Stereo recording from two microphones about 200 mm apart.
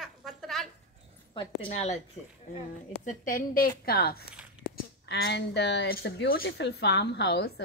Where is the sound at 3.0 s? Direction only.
40° left (ahead or behind).